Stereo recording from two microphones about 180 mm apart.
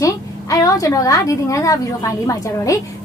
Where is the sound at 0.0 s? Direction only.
20° left (ahead or behind).